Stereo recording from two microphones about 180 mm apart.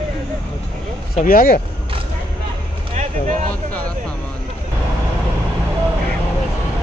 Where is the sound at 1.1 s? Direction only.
50° left (ahead or behind).